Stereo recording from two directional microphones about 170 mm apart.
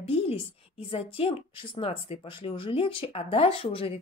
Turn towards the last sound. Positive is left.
turn(degrees=35)  # may be behind; listen again after turning